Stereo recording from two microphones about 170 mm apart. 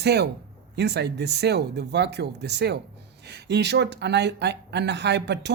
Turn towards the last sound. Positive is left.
turn(degrees=-90)